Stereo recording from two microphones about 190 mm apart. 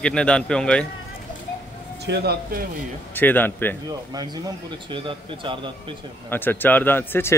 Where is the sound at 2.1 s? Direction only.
55° right (ahead or behind).